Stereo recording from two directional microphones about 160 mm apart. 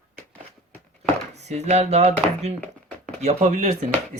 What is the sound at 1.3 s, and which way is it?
Speech, 45° right (ahead or behind).